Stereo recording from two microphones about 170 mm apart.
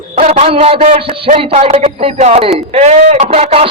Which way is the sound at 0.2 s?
40° right (ahead or behind).